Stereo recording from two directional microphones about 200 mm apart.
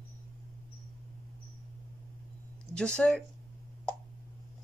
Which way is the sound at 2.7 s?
5° left (ahead or behind).